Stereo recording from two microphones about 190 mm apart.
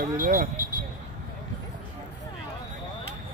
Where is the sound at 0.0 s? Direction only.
50° right (ahead or behind).